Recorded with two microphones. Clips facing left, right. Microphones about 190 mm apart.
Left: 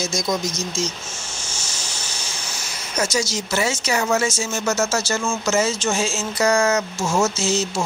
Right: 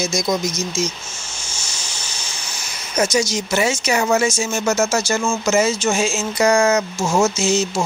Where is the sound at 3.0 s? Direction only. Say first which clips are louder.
Right 4 dB; 15° right (ahead or behind).